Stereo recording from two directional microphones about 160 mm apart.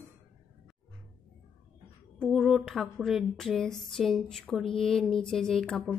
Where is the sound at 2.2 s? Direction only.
Centre (ahead or behind).